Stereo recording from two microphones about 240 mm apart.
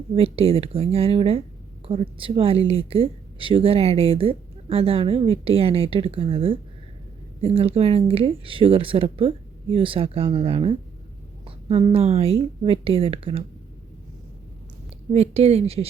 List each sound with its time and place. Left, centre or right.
0.1 s speech: right
15.1 s speech: right